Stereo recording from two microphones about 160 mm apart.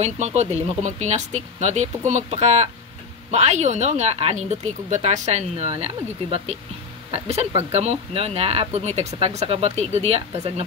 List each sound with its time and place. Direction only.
0.0 s speech: 45° right (ahead or behind)